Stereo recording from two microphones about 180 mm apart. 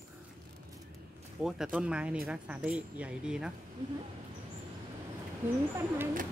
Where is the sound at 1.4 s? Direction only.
5° right (ahead or behind).